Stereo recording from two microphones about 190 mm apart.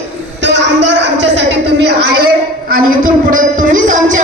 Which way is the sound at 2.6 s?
45° right (ahead or behind).